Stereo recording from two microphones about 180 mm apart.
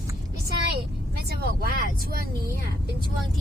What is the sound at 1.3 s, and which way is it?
Speech, 55° right (ahead or behind).